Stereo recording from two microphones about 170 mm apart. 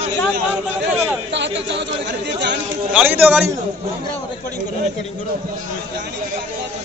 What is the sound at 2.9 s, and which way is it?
Speech, 10° right (ahead or behind).